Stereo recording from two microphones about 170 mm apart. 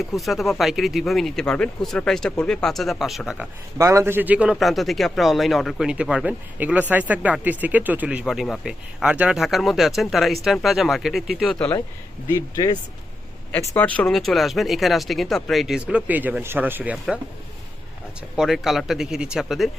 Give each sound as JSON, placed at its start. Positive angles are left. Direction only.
{"t": 0.0, "sound": "speech", "side_deg": 0}
{"t": 3.8, "sound": "speech", "side_deg": -15}
{"t": 12.3, "sound": "speech", "side_deg": 20}
{"t": 18.3, "sound": "speech", "side_deg": 0}